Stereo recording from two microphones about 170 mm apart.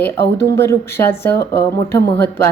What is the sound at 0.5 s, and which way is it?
A woman's voice, 15° left (ahead or behind).